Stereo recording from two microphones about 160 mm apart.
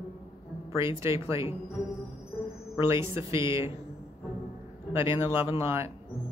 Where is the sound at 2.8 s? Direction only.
15° right (ahead or behind).